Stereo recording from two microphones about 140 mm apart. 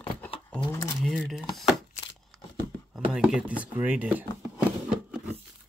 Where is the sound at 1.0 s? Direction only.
Centre (ahead or behind).